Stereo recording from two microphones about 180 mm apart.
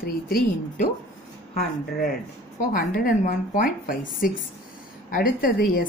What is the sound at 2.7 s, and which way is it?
A woman's voice, 50° left (ahead or behind).